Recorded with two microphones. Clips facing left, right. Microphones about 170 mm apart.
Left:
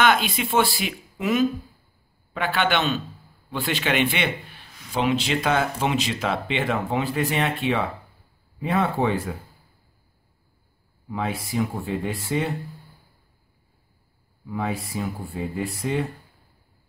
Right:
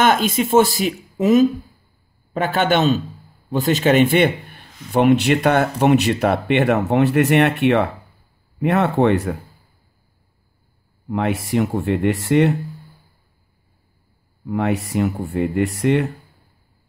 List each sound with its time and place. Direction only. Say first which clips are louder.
0.0 s a man's voice: right 4 dB; 45° right (ahead or behind); by 9.4 s 70° right (ahead or behind)
11.1 s speech: right 7 dB; 70° right (ahead or behind)
14.4 s speech: right 7 dB; 70° right (ahead or behind)